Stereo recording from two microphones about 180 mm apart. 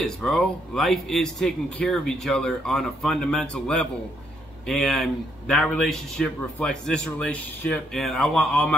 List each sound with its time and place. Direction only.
0.0 s a man's voice: 5° left (ahead or behind)